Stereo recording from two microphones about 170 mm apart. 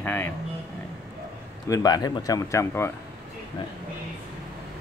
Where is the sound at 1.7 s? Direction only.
20° left (ahead or behind).